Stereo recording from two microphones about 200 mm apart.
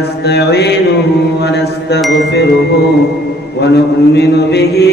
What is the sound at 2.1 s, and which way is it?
Mantra, 60° left (ahead or behind).